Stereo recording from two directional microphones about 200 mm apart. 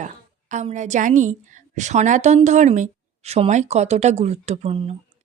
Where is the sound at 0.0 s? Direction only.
35° right (ahead or behind).